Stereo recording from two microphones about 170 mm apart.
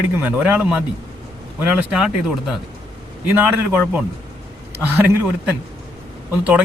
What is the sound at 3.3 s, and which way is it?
A man's voice, 10° right (ahead or behind).